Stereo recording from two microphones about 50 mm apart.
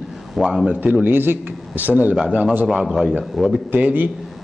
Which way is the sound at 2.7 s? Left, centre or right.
Centre.